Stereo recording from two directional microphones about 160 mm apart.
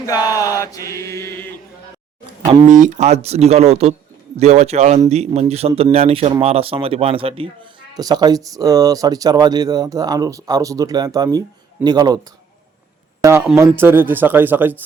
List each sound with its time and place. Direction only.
0.0 s mantra: 25° left (ahead or behind)
2.6 s speech: 50° right (ahead or behind); by 7.7 s 35° right (ahead or behind)
7.9 s speech: 25° right (ahead or behind)
13.2 s speech: 15° right (ahead or behind)